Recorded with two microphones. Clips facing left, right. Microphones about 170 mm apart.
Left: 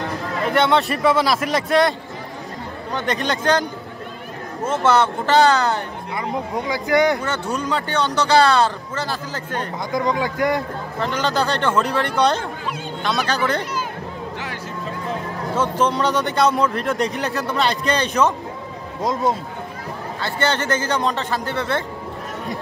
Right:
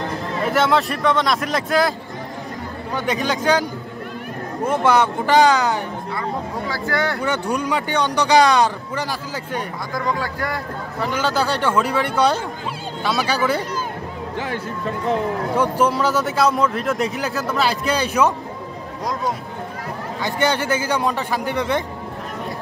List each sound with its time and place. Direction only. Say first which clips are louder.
0.5 s a man's voice: left 1 dB; centre (ahead or behind)
4.6 s speech: even; 15° right (ahead or behind)
6.1 s speech: left 3 dB; 20° left (ahead or behind)
7.2 s speech: right 2 dB; 15° right (ahead or behind)
9.9 s speech: left 4 dB; 20° left (ahead or behind)
11.0 s speech: even; 10° right (ahead or behind)
15.5 s a man's voice: even; 10° right (ahead or behind)
20.2 s speech: right 2 dB; 15° right (ahead or behind)